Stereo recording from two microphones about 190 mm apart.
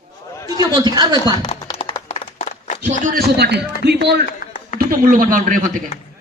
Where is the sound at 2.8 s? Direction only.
40° right (ahead or behind); by 4.3 s 60° right (ahead or behind).